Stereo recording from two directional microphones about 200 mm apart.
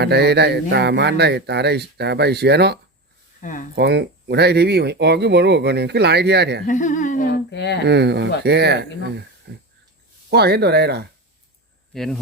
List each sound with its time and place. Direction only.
0.0 s speech: 55° right (ahead or behind)
3.4 s speech: 40° left (ahead or behind)
3.8 s speech: 55° right (ahead or behind)
6.7 s humming: 40° left (ahead or behind); by 7.8 s 60° left (ahead or behind)
7.9 s speech: 55° right (ahead or behind)
11.9 s speech: centre (ahead or behind)